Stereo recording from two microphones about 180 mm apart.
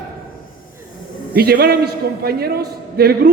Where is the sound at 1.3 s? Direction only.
60° right (ahead or behind).